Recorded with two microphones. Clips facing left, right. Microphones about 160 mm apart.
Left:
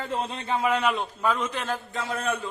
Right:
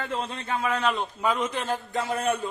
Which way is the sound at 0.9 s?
5° right (ahead or behind).